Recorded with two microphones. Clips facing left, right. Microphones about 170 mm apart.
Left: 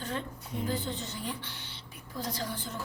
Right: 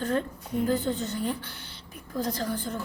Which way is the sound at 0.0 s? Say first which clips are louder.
Right 8 dB; 45° right (ahead or behind).